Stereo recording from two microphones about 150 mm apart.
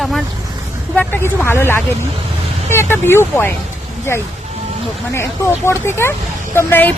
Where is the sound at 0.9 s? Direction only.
15° left (ahead or behind).